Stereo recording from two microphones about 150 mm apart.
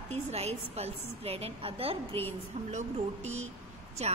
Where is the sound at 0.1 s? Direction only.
45° right (ahead or behind).